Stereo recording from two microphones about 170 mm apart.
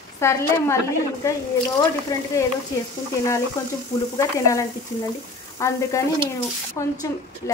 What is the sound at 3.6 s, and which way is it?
Speech, 15° left (ahead or behind).